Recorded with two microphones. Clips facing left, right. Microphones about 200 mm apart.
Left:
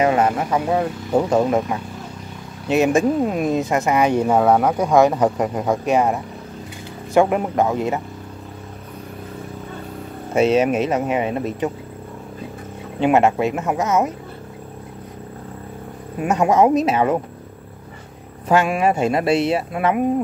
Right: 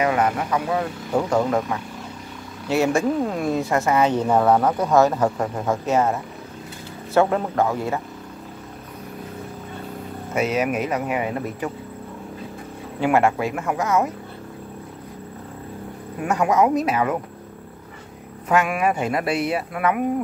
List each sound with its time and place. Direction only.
0.0 s speech: 30° left (ahead or behind)
10.3 s speech: 25° left (ahead or behind)
13.0 s speech: 20° left (ahead or behind)
16.2 s speech: 20° left (ahead or behind)
18.5 s speech: 30° left (ahead or behind)